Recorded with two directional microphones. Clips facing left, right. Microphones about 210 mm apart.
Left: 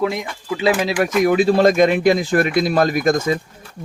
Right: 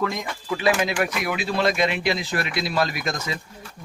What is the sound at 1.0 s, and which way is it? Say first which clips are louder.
Speech: left 10 dB; 45° left (ahead or behind).